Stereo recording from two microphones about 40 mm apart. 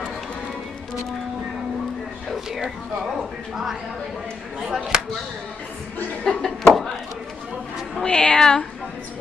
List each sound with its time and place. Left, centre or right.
2.3 s speech: centre
6.2 s speech: centre
8.0 s a woman's voice: left